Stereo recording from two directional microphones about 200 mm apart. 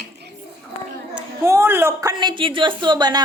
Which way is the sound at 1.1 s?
15° right (ahead or behind).